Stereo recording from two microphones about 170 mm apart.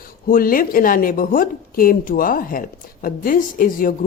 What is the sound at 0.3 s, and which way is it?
A woman's voice, 55° left (ahead or behind).